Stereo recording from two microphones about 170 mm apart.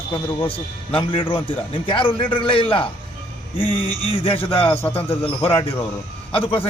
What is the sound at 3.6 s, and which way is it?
A man's voice, 35° left (ahead or behind).